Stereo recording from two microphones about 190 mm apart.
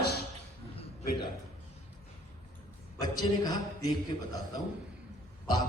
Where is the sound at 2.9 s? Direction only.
20° left (ahead or behind).